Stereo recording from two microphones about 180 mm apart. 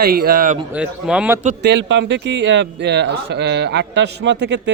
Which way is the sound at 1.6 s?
80° right.